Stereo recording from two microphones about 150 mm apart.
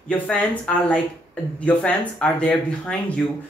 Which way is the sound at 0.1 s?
10° left (ahead or behind).